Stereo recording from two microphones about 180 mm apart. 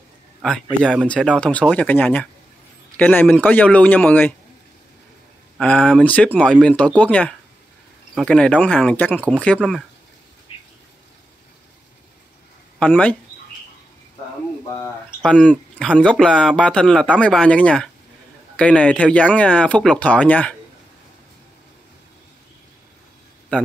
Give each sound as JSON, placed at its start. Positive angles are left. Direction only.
{"t": 0.4, "sound": "a man's voice", "side_deg": 0}
{"t": 5.6, "sound": "speech", "side_deg": 5}
{"t": 10.5, "sound": "a sound", "side_deg": 30}
{"t": 12.7, "sound": "speech", "side_deg": 5}
{"t": 14.8, "sound": "speech", "side_deg": 5}
{"t": 23.5, "sound": "speech", "side_deg": 5}